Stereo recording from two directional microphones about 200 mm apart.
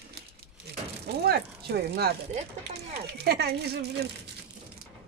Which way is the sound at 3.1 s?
55° right (ahead or behind).